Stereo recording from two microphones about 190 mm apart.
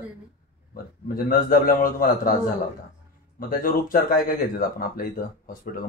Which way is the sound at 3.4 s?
50° left (ahead or behind).